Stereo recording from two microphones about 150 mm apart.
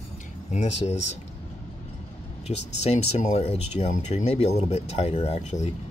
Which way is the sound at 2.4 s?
45° left (ahead or behind).